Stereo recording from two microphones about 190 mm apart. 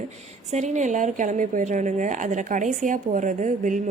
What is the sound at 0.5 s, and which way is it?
A woman's voice, 40° right (ahead or behind).